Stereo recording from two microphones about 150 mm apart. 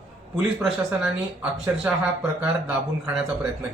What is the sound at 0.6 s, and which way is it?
Speech, 5° right (ahead or behind).